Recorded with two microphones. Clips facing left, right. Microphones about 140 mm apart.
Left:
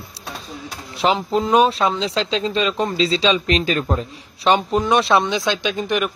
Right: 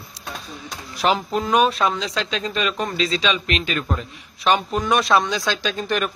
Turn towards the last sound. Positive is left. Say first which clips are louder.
# left 2 dB
turn(degrees=15)  # may be behind; listen again after turning